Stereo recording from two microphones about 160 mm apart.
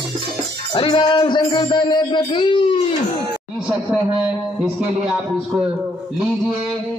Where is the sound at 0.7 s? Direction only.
30° left (ahead or behind).